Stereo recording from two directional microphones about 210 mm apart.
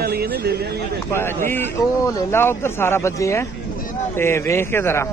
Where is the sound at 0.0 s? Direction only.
50° right (ahead or behind).